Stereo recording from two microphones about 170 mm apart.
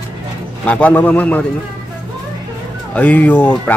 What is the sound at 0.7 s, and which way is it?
Speech, 10° left (ahead or behind).